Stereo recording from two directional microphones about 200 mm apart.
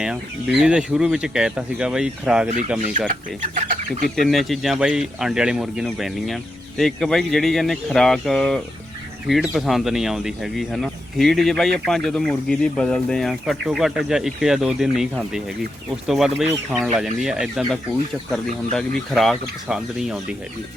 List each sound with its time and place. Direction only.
0.0 s speech: 5° right (ahead or behind)
3.5 s speech: 40° right (ahead or behind)
4.1 s speech: centre (ahead or behind)